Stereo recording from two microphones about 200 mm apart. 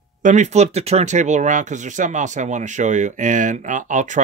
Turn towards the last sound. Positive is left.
turn(degrees=-40)  # may be behind; listen again after turning